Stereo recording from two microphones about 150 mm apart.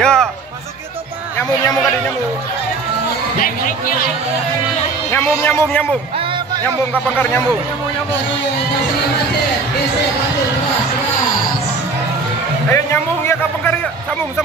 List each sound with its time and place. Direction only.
0.0 s music: 5° left (ahead or behind)
5.1 s speech: 15° left (ahead or behind)
12.7 s a man's voice: 15° left (ahead or behind)